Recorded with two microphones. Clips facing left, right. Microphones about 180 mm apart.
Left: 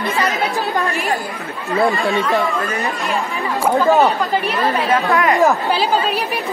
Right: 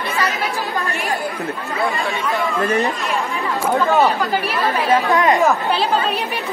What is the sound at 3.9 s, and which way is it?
A man's voice, centre (ahead or behind).